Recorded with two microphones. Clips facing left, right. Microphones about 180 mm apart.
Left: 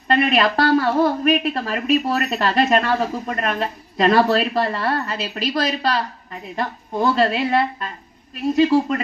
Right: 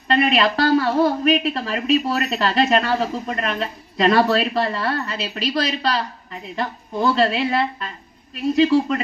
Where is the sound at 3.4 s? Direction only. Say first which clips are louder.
Left 2 dB; 45° left (ahead or behind).